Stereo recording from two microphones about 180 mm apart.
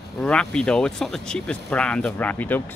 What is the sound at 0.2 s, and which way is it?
Speech, 5° left (ahead or behind).